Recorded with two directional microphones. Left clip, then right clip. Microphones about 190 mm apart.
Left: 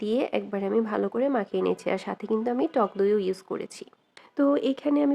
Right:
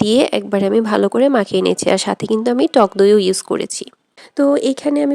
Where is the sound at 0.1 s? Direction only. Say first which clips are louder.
Right 10 dB; 45° right (ahead or behind).